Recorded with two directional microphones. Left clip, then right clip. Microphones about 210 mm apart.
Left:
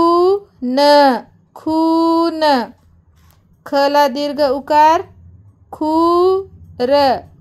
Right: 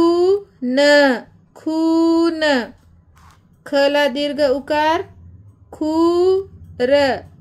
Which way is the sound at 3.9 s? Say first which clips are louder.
Left 3 dB; 65° left (ahead or behind).